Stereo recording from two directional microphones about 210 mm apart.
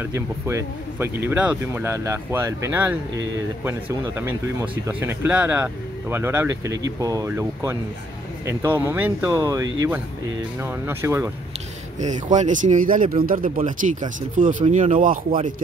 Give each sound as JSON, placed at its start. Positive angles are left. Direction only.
{"t": 0.0, "sound": "speech", "side_deg": -10}
{"t": 12.0, "sound": "speech", "side_deg": -35}